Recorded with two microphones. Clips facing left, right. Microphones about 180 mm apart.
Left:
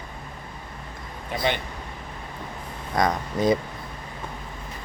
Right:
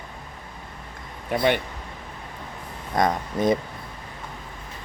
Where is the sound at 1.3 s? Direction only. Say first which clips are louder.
Right 4 dB; 55° right (ahead or behind).